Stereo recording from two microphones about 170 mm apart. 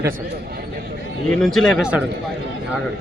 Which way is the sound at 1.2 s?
5° left (ahead or behind).